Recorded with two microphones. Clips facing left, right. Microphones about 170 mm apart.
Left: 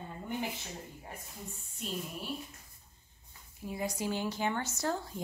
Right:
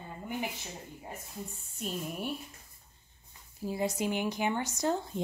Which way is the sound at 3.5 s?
30° right (ahead or behind).